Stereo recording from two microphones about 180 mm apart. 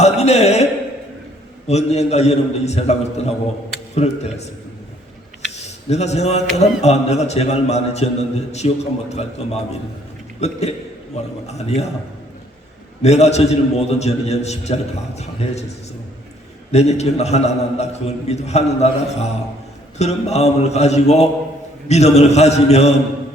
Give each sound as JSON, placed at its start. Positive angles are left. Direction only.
{"t": 0.0, "sound": "a sound", "side_deg": 40}
{"t": 1.6, "sound": "a man's voice", "side_deg": 35}
{"t": 5.6, "sound": "a man's voice", "side_deg": 35}
{"t": 13.0, "sound": "a man's voice", "side_deg": 35}
{"t": 16.7, "sound": "a man's voice", "side_deg": 35}